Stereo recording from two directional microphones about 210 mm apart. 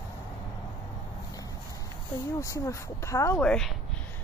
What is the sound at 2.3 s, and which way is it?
Speech, 15° left (ahead or behind).